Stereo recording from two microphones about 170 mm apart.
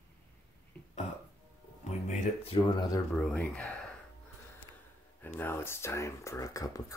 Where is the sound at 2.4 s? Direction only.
30° left (ahead or behind).